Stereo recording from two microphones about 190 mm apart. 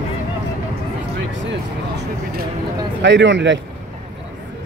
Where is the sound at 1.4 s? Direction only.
65° right (ahead or behind).